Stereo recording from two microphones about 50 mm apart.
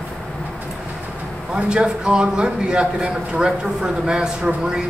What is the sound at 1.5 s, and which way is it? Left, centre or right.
A man's voice, centre.